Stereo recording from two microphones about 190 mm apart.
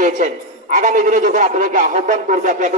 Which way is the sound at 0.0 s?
45° right (ahead or behind).